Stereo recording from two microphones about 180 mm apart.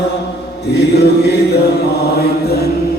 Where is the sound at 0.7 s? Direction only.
65° left (ahead or behind).